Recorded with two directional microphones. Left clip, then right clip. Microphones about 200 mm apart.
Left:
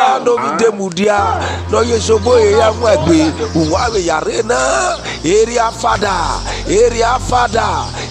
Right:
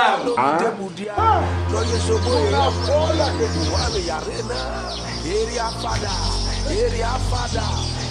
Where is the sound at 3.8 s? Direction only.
40° left (ahead or behind).